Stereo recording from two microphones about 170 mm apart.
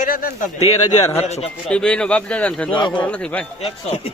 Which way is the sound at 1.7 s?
5° left (ahead or behind).